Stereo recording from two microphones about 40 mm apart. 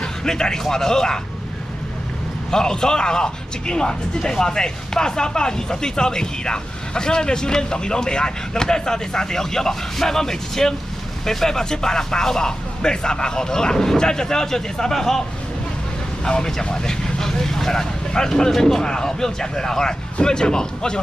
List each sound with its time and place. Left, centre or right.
0.0 s speech: centre
2.5 s speech: centre
16.3 s speech: centre